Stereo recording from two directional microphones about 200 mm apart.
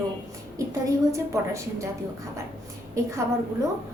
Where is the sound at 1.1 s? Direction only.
15° right (ahead or behind).